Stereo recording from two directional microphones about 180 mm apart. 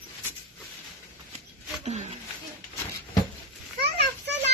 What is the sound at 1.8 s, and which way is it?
Speech, 35° right (ahead or behind).